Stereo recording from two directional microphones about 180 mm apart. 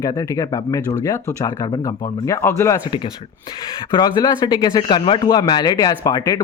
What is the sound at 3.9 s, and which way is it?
Speech, 25° left (ahead or behind).